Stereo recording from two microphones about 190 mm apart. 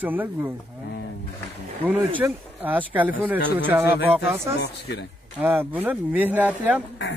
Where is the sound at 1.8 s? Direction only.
10° right (ahead or behind).